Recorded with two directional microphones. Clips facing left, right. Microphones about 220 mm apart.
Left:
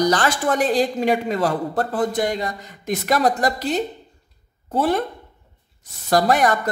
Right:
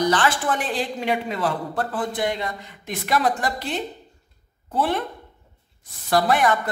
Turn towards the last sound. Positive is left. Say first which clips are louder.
# left 2 dB
turn(degrees=40)  # may be behind; listen again after turning